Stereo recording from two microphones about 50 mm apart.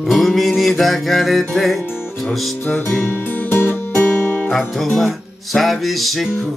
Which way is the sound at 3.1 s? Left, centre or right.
Left.